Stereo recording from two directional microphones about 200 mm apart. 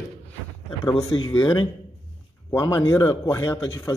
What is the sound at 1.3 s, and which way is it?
A man's voice, 20° left (ahead or behind).